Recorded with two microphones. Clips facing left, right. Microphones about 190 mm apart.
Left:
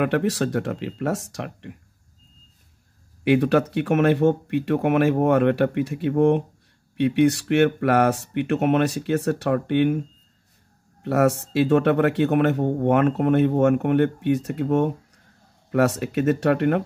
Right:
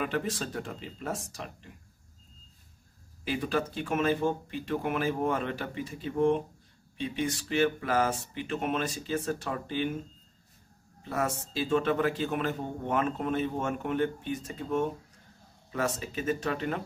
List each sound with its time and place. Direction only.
0.0 s a man's voice: 70° left (ahead or behind)
3.3 s a man's voice: 70° left (ahead or behind)